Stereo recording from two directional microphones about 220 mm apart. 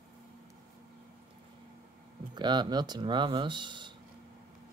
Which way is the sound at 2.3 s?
20° right (ahead or behind).